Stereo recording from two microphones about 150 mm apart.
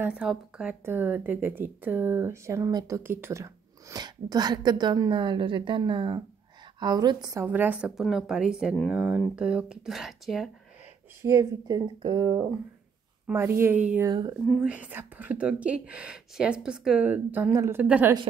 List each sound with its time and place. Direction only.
0.0 s speech: 5° right (ahead or behind); by 7.4 s 25° right (ahead or behind)
7.4 s speech: 10° right (ahead or behind)
11.2 s speech: 25° right (ahead or behind)
13.3 s speech: 15° right (ahead or behind)
14.0 s speech: 25° right (ahead or behind)
14.6 s speech: 10° right (ahead or behind)